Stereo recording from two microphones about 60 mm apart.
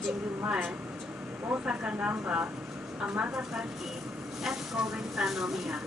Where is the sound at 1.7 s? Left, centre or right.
Centre.